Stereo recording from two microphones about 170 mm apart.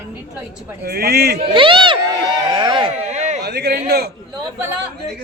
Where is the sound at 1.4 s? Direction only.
30° right (ahead or behind).